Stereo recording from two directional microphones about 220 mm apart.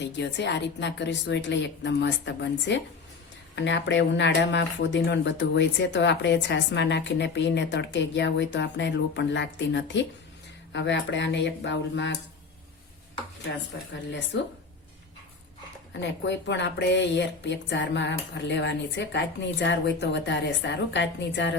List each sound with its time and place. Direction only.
0.0 s speech: 50° left (ahead or behind)
14.3 s speech: 55° left (ahead or behind)
15.9 s speech: 55° left (ahead or behind)